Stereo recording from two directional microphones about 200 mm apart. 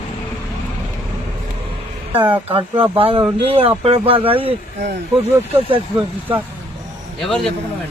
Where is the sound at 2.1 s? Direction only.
10° right (ahead or behind).